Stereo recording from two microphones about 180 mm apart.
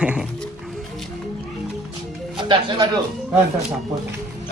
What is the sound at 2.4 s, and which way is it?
Speech, 25° right (ahead or behind).